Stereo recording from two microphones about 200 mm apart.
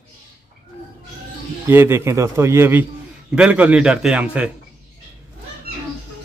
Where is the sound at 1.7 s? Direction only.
10° right (ahead or behind).